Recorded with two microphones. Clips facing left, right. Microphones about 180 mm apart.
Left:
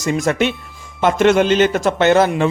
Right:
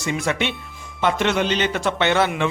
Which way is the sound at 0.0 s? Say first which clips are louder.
Left 6 dB; 45° left (ahead or behind).